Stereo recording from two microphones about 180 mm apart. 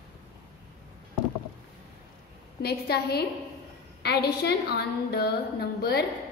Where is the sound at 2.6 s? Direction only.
60° left (ahead or behind).